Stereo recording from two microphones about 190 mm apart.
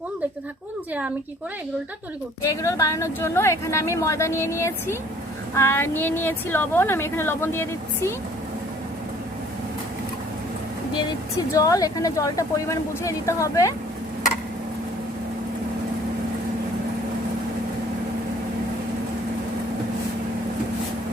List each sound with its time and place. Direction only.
2.4 s a woman's voice: 15° left (ahead or behind)
11.5 s a woman's voice: 20° left (ahead or behind)